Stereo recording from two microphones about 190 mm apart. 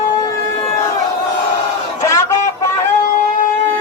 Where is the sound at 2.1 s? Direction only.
15° left (ahead or behind).